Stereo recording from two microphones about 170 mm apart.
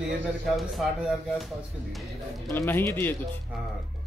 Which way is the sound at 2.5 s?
15° left (ahead or behind).